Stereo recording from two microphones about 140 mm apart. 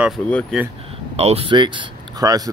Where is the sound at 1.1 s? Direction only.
45° right (ahead or behind); by 2.5 s 25° right (ahead or behind).